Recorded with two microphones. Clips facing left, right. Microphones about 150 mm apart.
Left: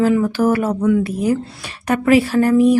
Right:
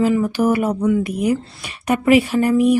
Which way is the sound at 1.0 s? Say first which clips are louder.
Left 1 dB; 15° right (ahead or behind).